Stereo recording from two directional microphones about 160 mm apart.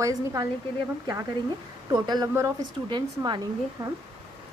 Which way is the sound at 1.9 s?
25° right (ahead or behind).